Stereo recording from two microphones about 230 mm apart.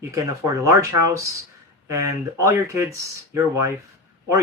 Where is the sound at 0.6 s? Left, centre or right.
Centre.